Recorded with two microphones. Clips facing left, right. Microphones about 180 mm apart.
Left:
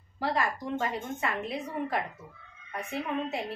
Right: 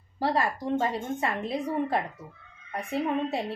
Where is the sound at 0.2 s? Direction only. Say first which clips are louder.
Right 3 dB; 35° right (ahead or behind).